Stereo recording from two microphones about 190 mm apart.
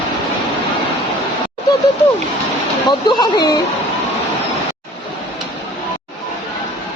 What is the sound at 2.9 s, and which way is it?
Speech, 25° left (ahead or behind).